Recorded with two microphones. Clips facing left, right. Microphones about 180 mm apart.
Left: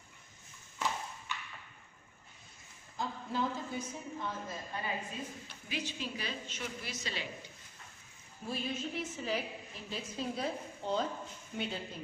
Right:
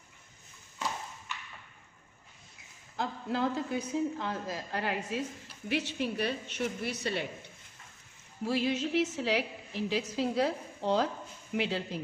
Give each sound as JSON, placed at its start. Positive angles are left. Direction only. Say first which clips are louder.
{"t": 3.0, "sound": "a woman's voice", "louder": "right 4 dB", "side_deg": -80}
{"t": 5.7, "sound": "a woman's voice", "louder": "right 8 dB", "side_deg": -65}
{"t": 8.5, "sound": "a woman's voice", "louder": "right 8 dB", "side_deg": -85}